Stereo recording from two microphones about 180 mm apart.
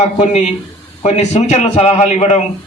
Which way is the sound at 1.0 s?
40° left (ahead or behind).